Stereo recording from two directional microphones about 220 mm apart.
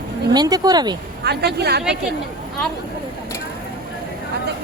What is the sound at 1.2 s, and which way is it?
Speech, 50° right (ahead or behind).